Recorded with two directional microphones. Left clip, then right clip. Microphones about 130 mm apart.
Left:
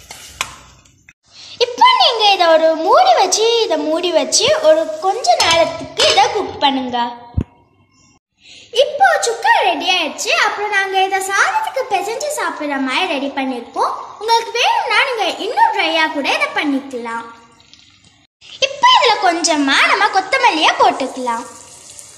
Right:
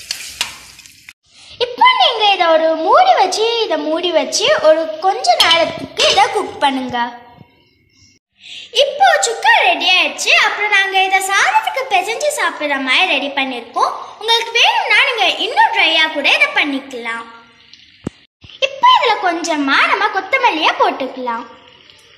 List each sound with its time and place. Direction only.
1.5 s a woman's voice: 5° left (ahead or behind)
8.5 s a woman's voice: 60° left (ahead or behind)
18.6 s a woman's voice: 5° left (ahead or behind)